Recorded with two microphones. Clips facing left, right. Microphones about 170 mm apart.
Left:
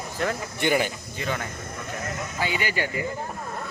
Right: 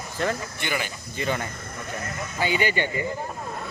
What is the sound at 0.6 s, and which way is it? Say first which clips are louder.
Speech: left 11 dB; 50° left (ahead or behind).